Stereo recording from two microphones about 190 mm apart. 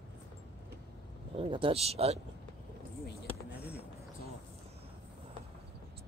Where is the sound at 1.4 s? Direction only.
25° right (ahead or behind).